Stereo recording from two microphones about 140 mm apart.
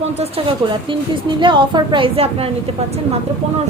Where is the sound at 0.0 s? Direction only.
45° right (ahead or behind).